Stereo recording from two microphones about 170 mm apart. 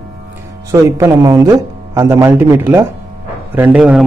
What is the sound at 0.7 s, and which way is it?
A man's voice, 20° right (ahead or behind).